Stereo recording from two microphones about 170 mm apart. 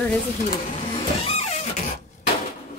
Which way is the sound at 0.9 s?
40° left (ahead or behind).